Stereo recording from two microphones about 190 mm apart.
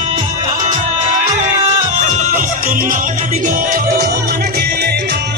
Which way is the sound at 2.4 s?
45° right (ahead or behind).